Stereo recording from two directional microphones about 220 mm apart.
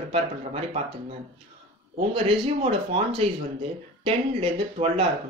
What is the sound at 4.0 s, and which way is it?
Speech, 25° right (ahead or behind).